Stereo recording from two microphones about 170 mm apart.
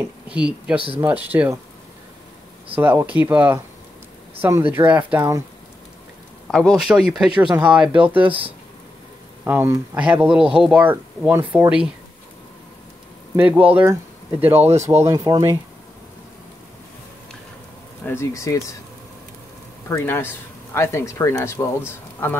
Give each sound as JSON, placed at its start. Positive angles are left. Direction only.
{"t": 0.3, "sound": "speech", "side_deg": -5}
{"t": 0.7, "sound": "speech", "side_deg": -30}
{"t": 1.0, "sound": "speech", "side_deg": -10}
{"t": 2.8, "sound": "speech", "side_deg": -10}
{"t": 6.4, "sound": "speech", "side_deg": 0}
{"t": 8.2, "sound": "speech", "side_deg": -30}
{"t": 9.4, "sound": "speech", "side_deg": -15}
{"t": 13.4, "sound": "speech", "side_deg": -10}
{"t": 15.0, "sound": "speech", "side_deg": -25}
{"t": 18.0, "sound": "speech", "side_deg": 15}
{"t": 19.9, "sound": "speech", "side_deg": 15}